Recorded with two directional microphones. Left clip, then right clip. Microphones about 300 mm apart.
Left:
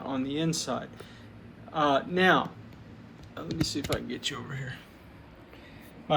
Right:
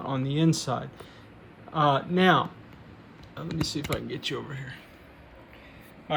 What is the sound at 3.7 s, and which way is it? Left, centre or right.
Speech, right.